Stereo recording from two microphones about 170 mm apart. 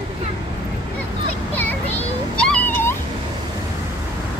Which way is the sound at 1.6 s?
10° left (ahead or behind).